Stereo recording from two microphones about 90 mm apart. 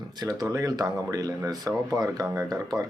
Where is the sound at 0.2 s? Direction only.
45° right (ahead or behind).